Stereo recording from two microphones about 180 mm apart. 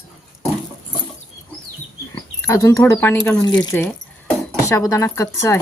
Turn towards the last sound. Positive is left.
turn(degrees=15)  # may be behind; listen again after turning